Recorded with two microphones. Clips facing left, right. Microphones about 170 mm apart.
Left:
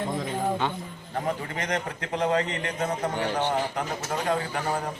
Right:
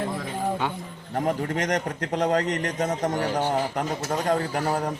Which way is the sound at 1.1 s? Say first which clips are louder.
Right 4 dB; 45° right (ahead or behind).